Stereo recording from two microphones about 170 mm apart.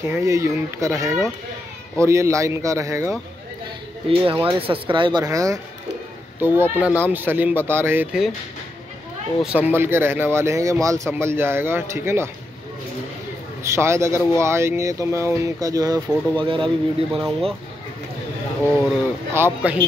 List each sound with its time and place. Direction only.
0.0 s speech: 15° right (ahead or behind)
4.1 s speech: 30° right (ahead or behind); by 8.3 s 10° right (ahead or behind)
9.4 s speech: 10° right (ahead or behind)
13.7 s speech: 15° right (ahead or behind)
16.6 s speech: centre (ahead or behind)
19.3 s speech: 10° right (ahead or behind)